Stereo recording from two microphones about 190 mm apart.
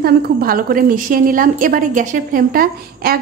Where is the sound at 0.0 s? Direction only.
50° right (ahead or behind).